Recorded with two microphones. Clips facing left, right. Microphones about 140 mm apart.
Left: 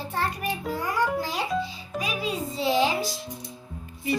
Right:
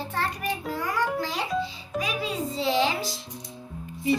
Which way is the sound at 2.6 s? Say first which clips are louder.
Left 1 dB; 10° left (ahead or behind).